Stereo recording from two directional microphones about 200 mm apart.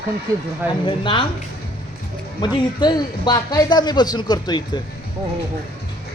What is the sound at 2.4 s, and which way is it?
Speech, 20° left (ahead or behind).